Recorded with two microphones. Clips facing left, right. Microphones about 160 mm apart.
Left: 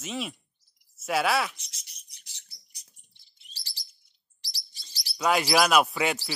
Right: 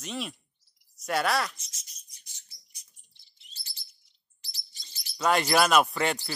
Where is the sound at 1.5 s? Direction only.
70° left (ahead or behind).